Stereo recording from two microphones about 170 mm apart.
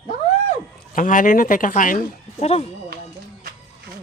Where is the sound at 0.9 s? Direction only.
50° left (ahead or behind).